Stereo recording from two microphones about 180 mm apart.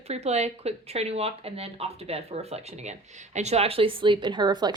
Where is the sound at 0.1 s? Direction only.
35° right (ahead or behind).